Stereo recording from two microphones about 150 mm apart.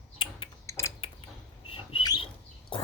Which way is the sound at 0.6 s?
20° left (ahead or behind).